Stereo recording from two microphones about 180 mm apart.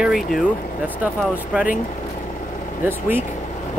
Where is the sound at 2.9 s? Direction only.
10° right (ahead or behind).